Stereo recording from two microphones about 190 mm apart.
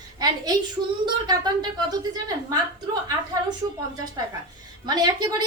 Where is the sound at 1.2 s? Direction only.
20° right (ahead or behind).